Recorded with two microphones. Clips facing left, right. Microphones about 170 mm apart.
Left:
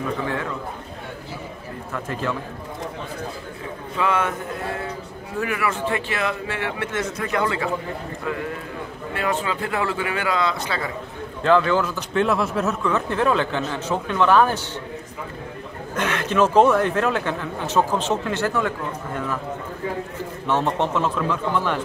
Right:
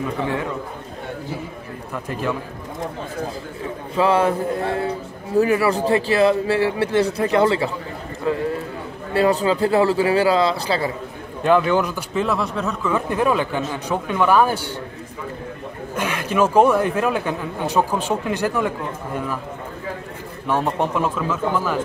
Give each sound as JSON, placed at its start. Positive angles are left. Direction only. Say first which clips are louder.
{"t": 2.0, "sound": "speech", "louder": "right 2 dB", "side_deg": -15}
{"t": 3.9, "sound": "a man's voice", "louder": "right 6 dB", "side_deg": -35}
{"t": 5.4, "sound": "a man's voice", "louder": "right 7 dB", "side_deg": -35}
{"t": 8.3, "sound": "a sound", "louder": "right 6 dB", "side_deg": -30}
{"t": 9.1, "sound": "a man's voice", "louder": "right 8 dB", "side_deg": -35}
{"t": 11.4, "sound": "speech", "louder": "right 1 dB", "side_deg": -15}
{"t": 12.1, "sound": "speech", "louder": "left 1 dB", "side_deg": 0}
{"t": 12.9, "sound": "speech", "louder": "right 3 dB", "side_deg": -10}
{"t": 15.9, "sound": "speech", "louder": "even", "side_deg": -10}
{"t": 20.4, "sound": "speech", "louder": "right 1 dB", "side_deg": -10}